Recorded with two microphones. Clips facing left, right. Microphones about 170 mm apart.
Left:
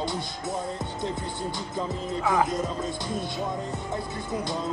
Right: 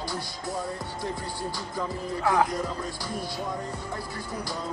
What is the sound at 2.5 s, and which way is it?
Speech, 20° left (ahead or behind).